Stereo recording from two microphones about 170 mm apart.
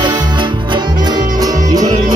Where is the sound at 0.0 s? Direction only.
25° right (ahead or behind).